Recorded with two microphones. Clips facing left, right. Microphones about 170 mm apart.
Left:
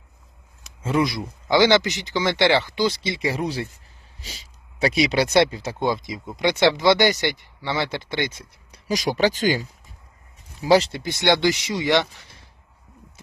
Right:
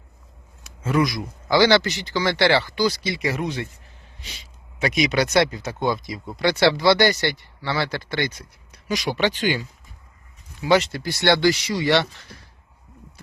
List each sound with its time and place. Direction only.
0.8 s speech: 25° left (ahead or behind)
8.9 s speech: 40° left (ahead or behind); by 12.3 s 15° left (ahead or behind)